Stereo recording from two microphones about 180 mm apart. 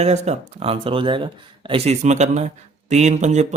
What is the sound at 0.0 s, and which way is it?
A man's voice, 40° right (ahead or behind).